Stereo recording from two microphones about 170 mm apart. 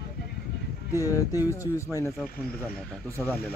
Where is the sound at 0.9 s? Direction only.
15° right (ahead or behind).